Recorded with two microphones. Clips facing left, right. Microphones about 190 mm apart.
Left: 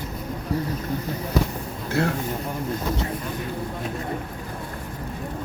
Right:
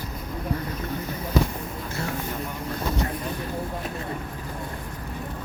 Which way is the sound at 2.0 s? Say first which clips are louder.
Left 8 dB; 65° left (ahead or behind).